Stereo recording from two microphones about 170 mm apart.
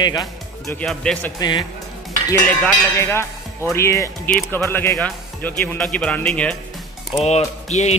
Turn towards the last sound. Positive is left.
turn(degrees=40)  # may be behind; listen again after turning